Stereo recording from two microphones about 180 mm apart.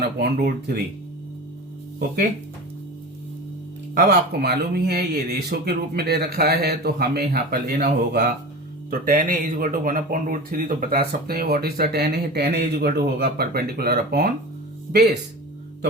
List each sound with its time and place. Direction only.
0.0 s speech: 60° right (ahead or behind)
3.9 s speech: 65° right (ahead or behind)
8.9 s speech: 50° right (ahead or behind); by 15.2 s 65° right (ahead or behind)